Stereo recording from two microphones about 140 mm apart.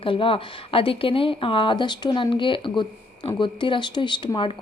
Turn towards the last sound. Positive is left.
turn(degrees=35)  # may be behind; listen again after turning